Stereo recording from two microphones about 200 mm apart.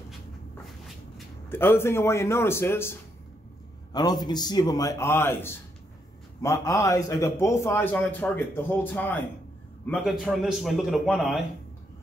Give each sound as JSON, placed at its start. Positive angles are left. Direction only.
{"t": 1.5, "sound": "a man's voice", "side_deg": 10}
{"t": 3.9, "sound": "a man's voice", "side_deg": 20}